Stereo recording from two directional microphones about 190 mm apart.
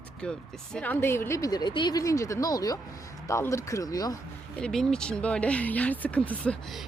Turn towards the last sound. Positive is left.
turn(degrees=5)  # may be behind; listen again after turning